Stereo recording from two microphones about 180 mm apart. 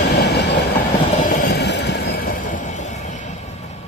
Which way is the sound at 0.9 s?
45° left (ahead or behind).